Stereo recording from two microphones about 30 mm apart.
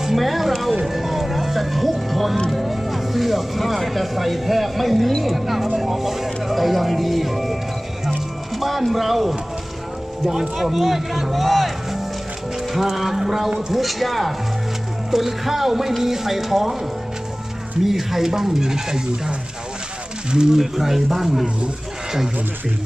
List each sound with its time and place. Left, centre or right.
0.2 s speech: centre
0.8 s music: centre
2.5 s speech: centre
8.5 s speech: centre
10.6 s speech: centre
17.8 s speech: centre; by 20.5 s right
20.5 s speech: centre